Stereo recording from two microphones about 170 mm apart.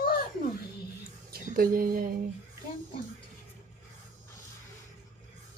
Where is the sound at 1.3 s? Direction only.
60° right (ahead or behind).